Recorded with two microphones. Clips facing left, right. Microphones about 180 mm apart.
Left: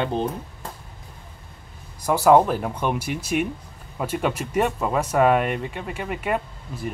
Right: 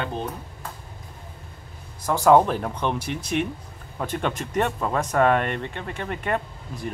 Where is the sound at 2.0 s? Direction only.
5° left (ahead or behind).